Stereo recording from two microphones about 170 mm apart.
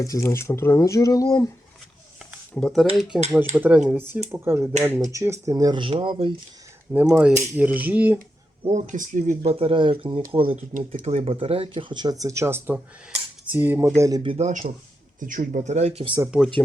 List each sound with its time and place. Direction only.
0.0 s speech: 20° left (ahead or behind)
2.6 s speech: 5° left (ahead or behind); by 6.3 s 30° right (ahead or behind)
6.9 s speech: 10° right (ahead or behind)
8.6 s speech: 45° right (ahead or behind)
9.4 s speech: 35° right (ahead or behind)
10.5 s speech: 50° right (ahead or behind); by 14.2 s 15° right (ahead or behind)
14.2 s speech: 35° right (ahead or behind)
15.2 s speech: 50° right (ahead or behind); by 16.2 s 30° right (ahead or behind)